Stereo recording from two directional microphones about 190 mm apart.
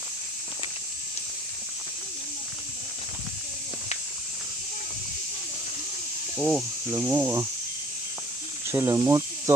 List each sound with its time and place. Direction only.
6.4 s speech: 10° right (ahead or behind)
8.7 s speech: 15° right (ahead or behind)